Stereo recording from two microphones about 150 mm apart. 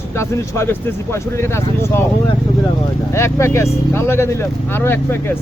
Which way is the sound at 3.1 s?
20° left (ahead or behind).